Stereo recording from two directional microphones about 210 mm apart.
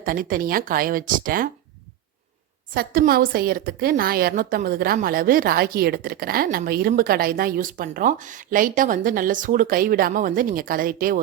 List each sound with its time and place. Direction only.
0.0 s a woman's voice: 40° right (ahead or behind)
2.7 s a woman's voice: 45° right (ahead or behind)